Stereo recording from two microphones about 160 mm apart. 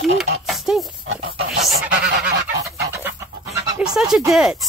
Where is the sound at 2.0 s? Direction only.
90° right.